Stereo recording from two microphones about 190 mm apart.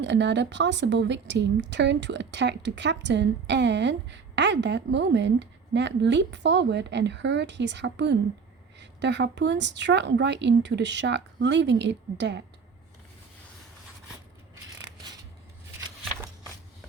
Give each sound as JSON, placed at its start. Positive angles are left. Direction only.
{"t": 0.0, "sound": "speech", "side_deg": -65}